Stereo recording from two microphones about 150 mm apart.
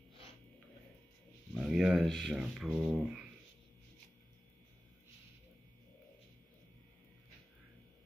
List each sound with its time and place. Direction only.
1.5 s speech: centre (ahead or behind)